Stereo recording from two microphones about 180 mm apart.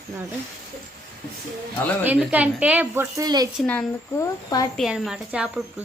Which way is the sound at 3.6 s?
10° left (ahead or behind).